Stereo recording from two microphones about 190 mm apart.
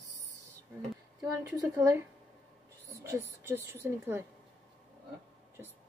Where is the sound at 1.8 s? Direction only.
15° right (ahead or behind).